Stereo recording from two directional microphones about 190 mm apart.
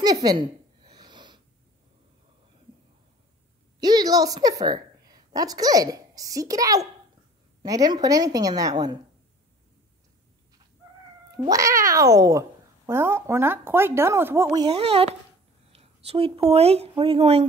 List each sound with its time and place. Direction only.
0.0 s a sound: 20° right (ahead or behind)
3.8 s a woman's voice: 20° right (ahead or behind)
11.3 s speech: 20° right (ahead or behind)